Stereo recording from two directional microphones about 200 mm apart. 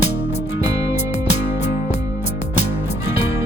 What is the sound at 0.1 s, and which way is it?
Music, 60° left (ahead or behind).